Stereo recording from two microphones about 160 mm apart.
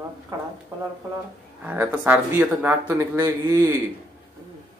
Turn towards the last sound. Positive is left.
turn(degrees=-20)  # may be behind; listen again after turning